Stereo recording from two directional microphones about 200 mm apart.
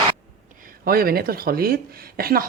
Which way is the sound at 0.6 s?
45° right (ahead or behind).